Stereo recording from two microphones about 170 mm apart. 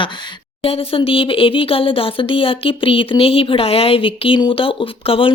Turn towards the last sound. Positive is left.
turn(degrees=30)  # may be behind; listen again after turning